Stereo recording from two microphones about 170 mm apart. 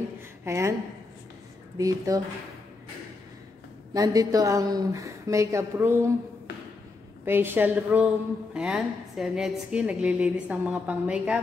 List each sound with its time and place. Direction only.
0.5 s a woman's voice: 15° right (ahead or behind)
1.8 s a woman's voice: 20° right (ahead or behind)
3.9 s a woman's voice: 20° right (ahead or behind)
7.2 s a woman's voice: 10° right (ahead or behind)